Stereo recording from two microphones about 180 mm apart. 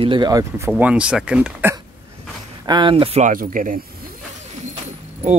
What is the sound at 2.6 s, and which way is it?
Speech, 25° right (ahead or behind).